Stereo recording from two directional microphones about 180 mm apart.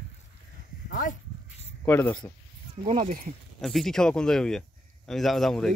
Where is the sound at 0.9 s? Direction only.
45° left (ahead or behind).